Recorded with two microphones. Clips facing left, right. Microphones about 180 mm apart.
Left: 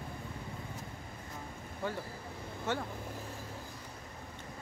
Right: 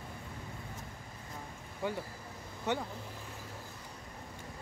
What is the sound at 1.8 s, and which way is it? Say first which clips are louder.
Speech: right 1 dB; 15° right (ahead or behind).